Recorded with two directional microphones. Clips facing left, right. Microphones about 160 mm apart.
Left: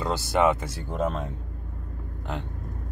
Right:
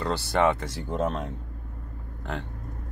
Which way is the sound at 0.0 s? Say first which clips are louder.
Left 1 dB; 10° left (ahead or behind).